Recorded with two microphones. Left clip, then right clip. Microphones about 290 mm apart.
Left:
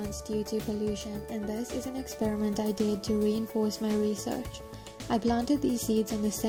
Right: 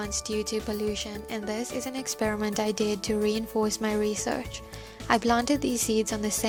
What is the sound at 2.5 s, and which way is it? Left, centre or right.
Speech, right.